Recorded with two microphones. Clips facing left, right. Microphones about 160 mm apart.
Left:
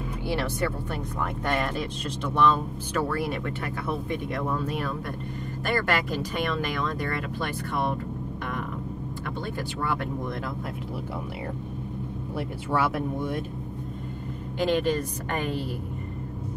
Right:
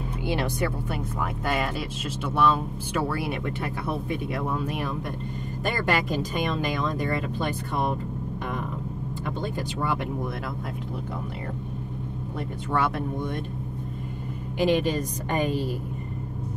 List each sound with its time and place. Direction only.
0.3 s speech: 15° right (ahead or behind)
9.6 s speech: 15° right (ahead or behind)
12.4 s speech: 5° left (ahead or behind)
14.6 s speech: 15° right (ahead or behind)